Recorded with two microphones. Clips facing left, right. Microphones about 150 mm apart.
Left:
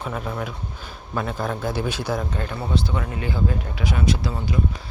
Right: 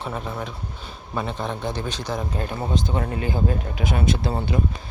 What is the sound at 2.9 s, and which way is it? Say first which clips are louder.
Speech: right 2 dB; 35° right (ahead or behind).